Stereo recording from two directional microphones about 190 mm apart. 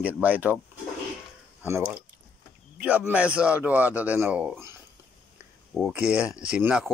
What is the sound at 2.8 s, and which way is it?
A man's voice, 5° right (ahead or behind).